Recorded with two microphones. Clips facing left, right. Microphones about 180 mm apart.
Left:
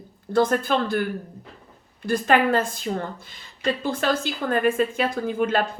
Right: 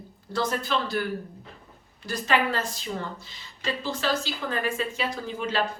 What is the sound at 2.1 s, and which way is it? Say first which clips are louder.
A woman's voice: left 6 dB; 50° left (ahead or behind).